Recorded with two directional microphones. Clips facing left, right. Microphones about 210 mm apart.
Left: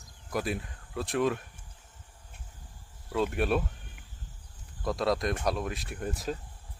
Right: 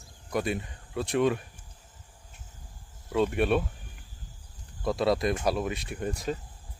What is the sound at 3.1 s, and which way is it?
Speech, centre (ahead or behind).